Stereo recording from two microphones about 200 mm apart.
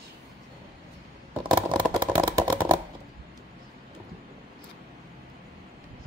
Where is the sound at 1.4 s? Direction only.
20° right (ahead or behind).